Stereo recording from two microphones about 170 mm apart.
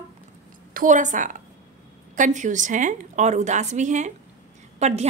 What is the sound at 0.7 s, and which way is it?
A woman's voice, 45° right (ahead or behind).